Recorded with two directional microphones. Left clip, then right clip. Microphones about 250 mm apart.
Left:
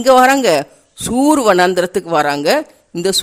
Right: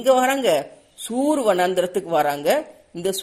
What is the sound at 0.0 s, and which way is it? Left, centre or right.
Speech, left.